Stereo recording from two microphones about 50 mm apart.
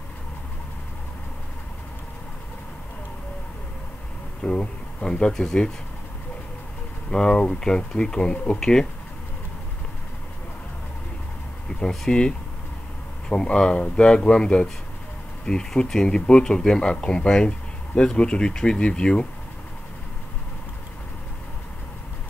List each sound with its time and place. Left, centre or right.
4.4 s speech: centre
7.1 s speech: centre
12.1 s speech: centre